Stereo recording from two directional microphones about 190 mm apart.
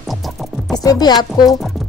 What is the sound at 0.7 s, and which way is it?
Speech, 20° left (ahead or behind).